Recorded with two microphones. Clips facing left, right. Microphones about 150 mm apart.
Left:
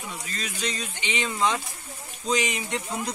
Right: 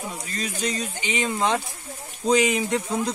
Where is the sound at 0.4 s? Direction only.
40° right (ahead or behind).